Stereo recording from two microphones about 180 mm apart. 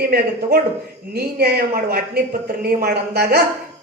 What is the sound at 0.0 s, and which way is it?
A man's voice, 60° right (ahead or behind).